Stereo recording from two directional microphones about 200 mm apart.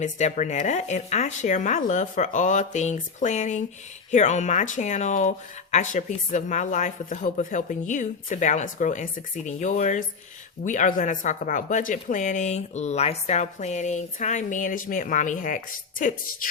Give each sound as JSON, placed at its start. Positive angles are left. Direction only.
{"t": 0.0, "sound": "speech", "side_deg": 35}